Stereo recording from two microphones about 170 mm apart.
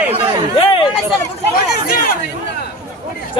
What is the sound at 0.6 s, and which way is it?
Chatter, 30° left (ahead or behind).